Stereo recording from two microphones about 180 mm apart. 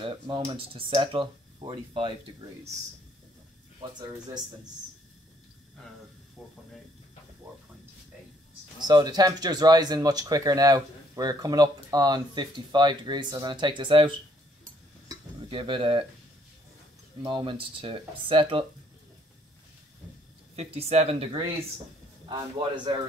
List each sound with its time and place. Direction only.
0.0 s speech: 25° right (ahead or behind)
8.7 s speech: 25° right (ahead or behind)
15.0 s cutlery: 25° right (ahead or behind)
17.2 s speech: 25° right (ahead or behind)
20.5 s speech: 35° right (ahead or behind)